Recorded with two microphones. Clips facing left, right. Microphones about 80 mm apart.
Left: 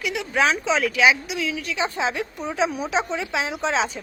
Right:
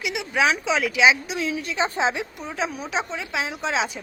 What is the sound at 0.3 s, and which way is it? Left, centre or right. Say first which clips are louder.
Speech: left 1 dB; centre.